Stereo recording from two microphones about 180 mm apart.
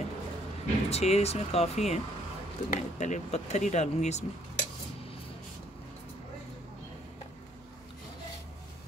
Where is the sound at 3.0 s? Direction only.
40° left (ahead or behind).